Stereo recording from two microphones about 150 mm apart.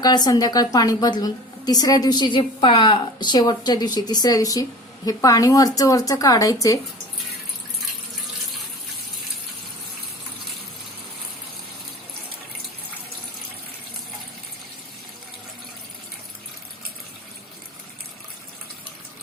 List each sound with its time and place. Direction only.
0.0 s a woman's voice: 25° left (ahead or behind)